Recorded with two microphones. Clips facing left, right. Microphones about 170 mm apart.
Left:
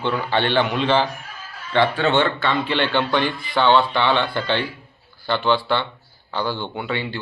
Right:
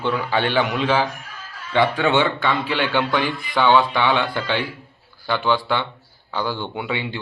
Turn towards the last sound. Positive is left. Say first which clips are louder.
# even
turn(degrees=-15)  # may be behind; listen again after turning